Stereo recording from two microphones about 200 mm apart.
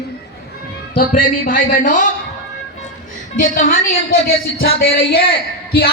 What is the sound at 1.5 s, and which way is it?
Speech, 40° left (ahead or behind).